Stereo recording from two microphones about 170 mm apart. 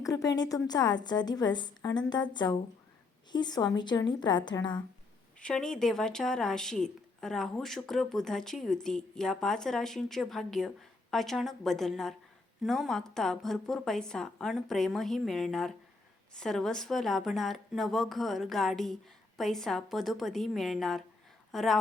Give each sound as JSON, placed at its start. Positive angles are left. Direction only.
{"t": 0.0, "sound": "a woman's voice", "side_deg": 20}
{"t": 5.4, "sound": "a woman's voice", "side_deg": 5}